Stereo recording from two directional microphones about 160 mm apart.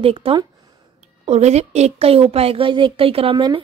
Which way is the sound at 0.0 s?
35° right (ahead or behind).